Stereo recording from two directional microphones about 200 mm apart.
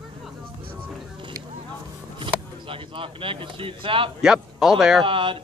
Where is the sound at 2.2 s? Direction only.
25° right (ahead or behind).